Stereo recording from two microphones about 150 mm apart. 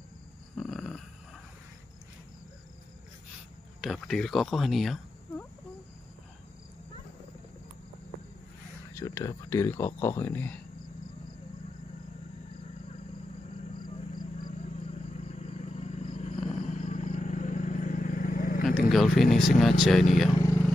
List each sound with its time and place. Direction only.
0.6 s snoring: centre (ahead or behind)
3.8 s speech: centre (ahead or behind)
8.9 s speech: 20° left (ahead or behind)
14.6 s a sound: 45° left (ahead or behind); by 18.8 s 65° left (ahead or behind)
18.8 s speech: centre (ahead or behind)
20.3 s vehicle: 20° left (ahead or behind)